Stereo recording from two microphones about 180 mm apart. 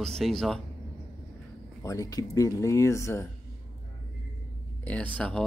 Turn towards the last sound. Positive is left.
turn(degrees=5)  # may be behind; listen again after turning